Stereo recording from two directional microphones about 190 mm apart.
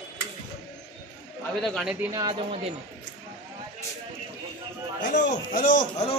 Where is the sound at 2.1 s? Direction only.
20° right (ahead or behind).